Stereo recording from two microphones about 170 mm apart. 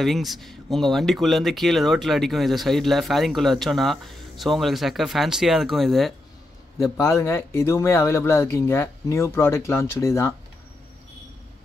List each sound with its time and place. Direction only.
0.0 s speech: centre (ahead or behind)
6.8 s speech: 15° left (ahead or behind)